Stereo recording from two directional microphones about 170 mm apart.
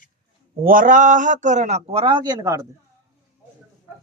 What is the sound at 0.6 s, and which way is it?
A man's voice, 55° right (ahead or behind).